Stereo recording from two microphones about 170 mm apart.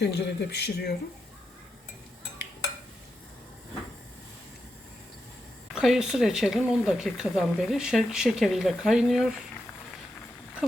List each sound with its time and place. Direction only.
0.0 s speech: 75° left (ahead or behind)
5.7 s speech: 5° right (ahead or behind)